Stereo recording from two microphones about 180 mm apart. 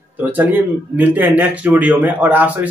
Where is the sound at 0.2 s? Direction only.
10° right (ahead or behind).